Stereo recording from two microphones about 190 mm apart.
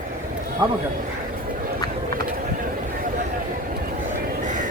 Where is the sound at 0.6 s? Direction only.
25° right (ahead or behind).